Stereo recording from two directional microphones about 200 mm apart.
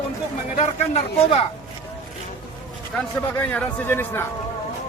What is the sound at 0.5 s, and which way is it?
Speech, 30° left (ahead or behind).